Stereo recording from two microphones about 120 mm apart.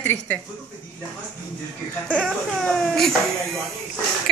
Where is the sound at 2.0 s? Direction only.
10° left (ahead or behind).